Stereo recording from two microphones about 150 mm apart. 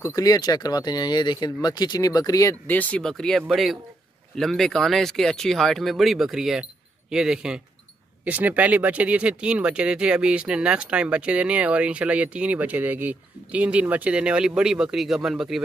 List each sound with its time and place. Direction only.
0.0 s speech: 25° left (ahead or behind)
2.7 s speech: 10° left (ahead or behind)